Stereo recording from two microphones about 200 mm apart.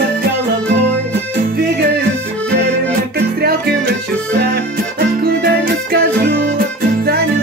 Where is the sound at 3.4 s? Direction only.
50° right (ahead or behind).